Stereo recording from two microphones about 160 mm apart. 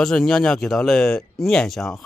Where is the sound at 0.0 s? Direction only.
5° left (ahead or behind).